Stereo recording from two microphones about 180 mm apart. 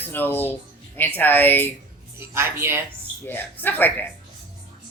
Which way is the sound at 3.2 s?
10° left (ahead or behind).